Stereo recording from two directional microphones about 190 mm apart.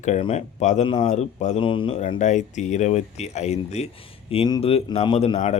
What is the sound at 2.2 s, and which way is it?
Speech, 40° left (ahead or behind).